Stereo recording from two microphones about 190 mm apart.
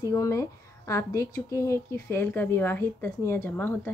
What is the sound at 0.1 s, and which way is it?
Speech, 15° left (ahead or behind).